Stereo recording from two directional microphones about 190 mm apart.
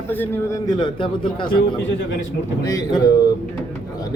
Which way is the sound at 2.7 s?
20° left (ahead or behind).